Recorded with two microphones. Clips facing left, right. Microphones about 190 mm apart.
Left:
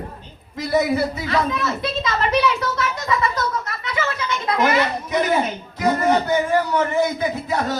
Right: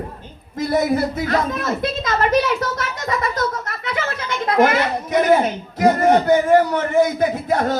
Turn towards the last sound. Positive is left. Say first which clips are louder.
# right 4 dB
turn(degrees=-50)  # may be behind; listen again after turning